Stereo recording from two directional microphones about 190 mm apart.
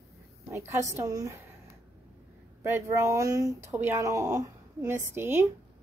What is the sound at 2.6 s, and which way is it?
Speech, 15° right (ahead or behind).